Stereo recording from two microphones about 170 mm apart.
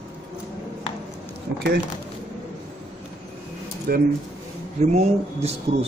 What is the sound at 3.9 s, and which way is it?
Speech, 60° right (ahead or behind).